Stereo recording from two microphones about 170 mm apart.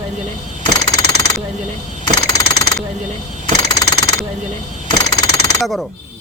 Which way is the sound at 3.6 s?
25° left (ahead or behind).